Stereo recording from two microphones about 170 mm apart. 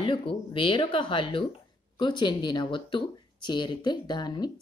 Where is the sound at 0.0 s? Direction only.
30° left (ahead or behind).